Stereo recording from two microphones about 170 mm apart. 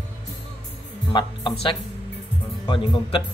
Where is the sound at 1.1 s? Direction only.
25° left (ahead or behind).